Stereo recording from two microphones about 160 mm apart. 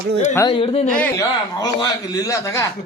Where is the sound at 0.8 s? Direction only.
10° left (ahead or behind).